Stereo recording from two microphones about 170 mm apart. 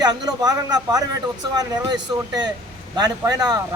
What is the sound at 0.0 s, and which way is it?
A man's voice, 25° right (ahead or behind).